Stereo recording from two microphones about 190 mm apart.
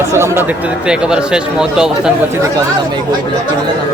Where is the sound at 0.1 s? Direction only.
15° right (ahead or behind).